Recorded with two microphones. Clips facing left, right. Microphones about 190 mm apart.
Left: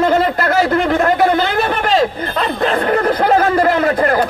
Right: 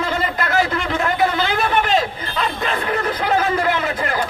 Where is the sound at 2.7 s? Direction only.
45° left (ahead or behind).